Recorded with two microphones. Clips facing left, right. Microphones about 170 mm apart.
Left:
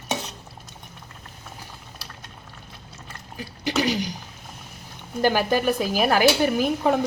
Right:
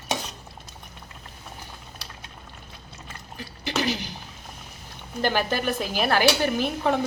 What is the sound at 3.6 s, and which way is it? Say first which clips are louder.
Speech: left 3 dB; 45° left (ahead or behind).